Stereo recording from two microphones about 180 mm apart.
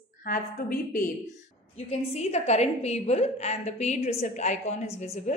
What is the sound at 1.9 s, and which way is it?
A woman's voice, 35° left (ahead or behind).